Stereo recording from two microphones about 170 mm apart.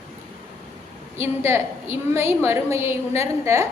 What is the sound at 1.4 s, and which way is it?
A woman's voice, 15° right (ahead or behind).